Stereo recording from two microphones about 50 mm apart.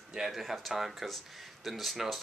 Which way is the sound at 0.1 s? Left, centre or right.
Centre.